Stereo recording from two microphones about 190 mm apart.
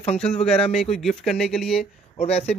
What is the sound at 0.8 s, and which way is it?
Speech, centre (ahead or behind).